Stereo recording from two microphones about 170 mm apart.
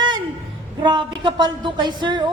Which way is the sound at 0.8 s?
25° right (ahead or behind).